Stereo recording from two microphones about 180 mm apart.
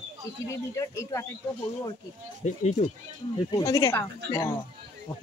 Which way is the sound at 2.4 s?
40° left (ahead or behind).